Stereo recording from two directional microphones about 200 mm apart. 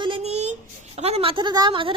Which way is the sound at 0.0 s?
30° right (ahead or behind).